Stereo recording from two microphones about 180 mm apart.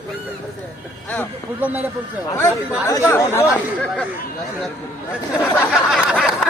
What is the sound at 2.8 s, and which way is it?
Speech, 20° left (ahead or behind).